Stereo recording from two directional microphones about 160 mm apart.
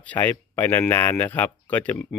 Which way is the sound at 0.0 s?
10° left (ahead or behind).